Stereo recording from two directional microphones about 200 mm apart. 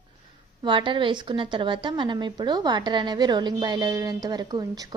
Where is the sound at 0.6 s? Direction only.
25° right (ahead or behind).